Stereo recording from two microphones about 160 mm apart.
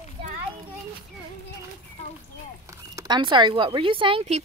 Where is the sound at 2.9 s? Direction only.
25° right (ahead or behind).